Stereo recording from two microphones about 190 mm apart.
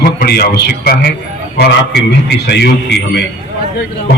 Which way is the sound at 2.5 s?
60° left (ahead or behind).